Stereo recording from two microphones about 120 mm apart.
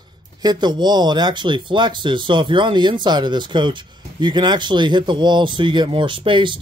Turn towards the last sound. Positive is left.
turn(degrees=-45)  # may be behind; listen again after turning